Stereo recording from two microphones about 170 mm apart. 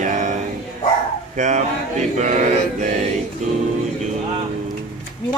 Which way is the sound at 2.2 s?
45° right (ahead or behind).